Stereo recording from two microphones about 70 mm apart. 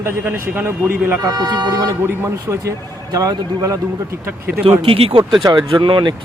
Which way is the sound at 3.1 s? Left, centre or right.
Right.